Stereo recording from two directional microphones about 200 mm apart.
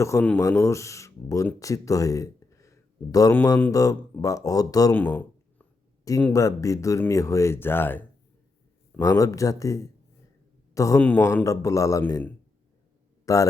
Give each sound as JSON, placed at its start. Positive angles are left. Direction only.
{"t": 0.0, "sound": "speech", "side_deg": 15}